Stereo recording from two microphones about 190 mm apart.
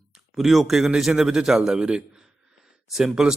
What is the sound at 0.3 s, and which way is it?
Speech, centre (ahead or behind).